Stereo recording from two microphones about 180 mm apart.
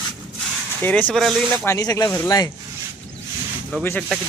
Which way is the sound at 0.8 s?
10° left (ahead or behind).